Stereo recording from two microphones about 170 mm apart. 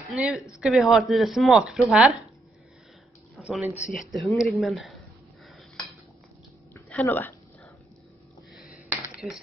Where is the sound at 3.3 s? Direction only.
5° right (ahead or behind).